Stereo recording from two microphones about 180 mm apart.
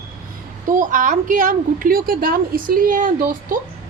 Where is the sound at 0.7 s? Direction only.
45° right (ahead or behind).